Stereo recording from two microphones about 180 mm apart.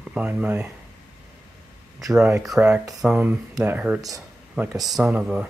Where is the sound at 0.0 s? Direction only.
5° right (ahead or behind).